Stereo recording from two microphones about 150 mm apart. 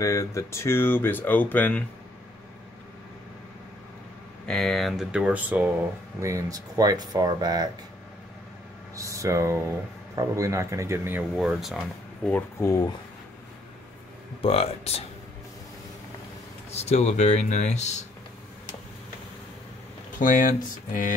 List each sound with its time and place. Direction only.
0.0 s speech: 20° left (ahead or behind)
4.5 s speech: centre (ahead or behind); by 7.7 s 25° right (ahead or behind)
8.9 s speech: 20° right (ahead or behind)
11.3 s speech: centre (ahead or behind)
12.3 s speech: 15° left (ahead or behind)
14.4 s speech: 40° left (ahead or behind)
16.7 s speech: 50° left (ahead or behind)
20.2 s speech: 60° left (ahead or behind)